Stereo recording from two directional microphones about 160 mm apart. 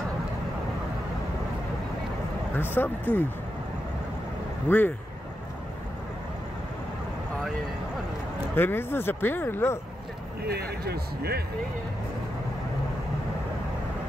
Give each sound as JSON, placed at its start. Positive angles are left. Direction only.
{"t": 2.5, "sound": "speech", "side_deg": 15}
{"t": 4.6, "sound": "speech", "side_deg": 10}
{"t": 8.5, "sound": "speech", "side_deg": 15}
{"t": 10.4, "sound": "speech", "side_deg": -85}